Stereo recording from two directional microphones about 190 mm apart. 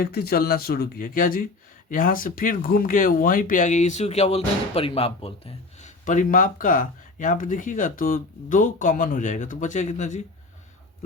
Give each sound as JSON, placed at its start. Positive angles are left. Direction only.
{"t": 0.0, "sound": "speech", "side_deg": 55}